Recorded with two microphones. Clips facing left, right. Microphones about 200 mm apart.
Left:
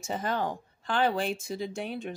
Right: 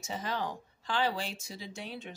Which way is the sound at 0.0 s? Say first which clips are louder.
Left 5 dB; 55° left (ahead or behind).